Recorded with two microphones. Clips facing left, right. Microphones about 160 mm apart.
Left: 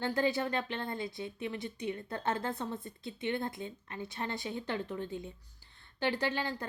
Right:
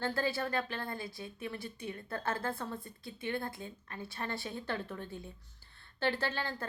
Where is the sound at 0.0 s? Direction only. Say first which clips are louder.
Left 3 dB; 20° left (ahead or behind).